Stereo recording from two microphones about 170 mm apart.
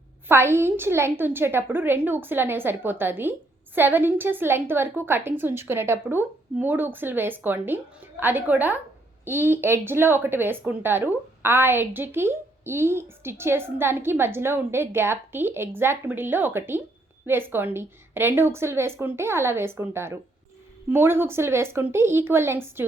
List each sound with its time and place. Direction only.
0.3 s speech: 15° right (ahead or behind)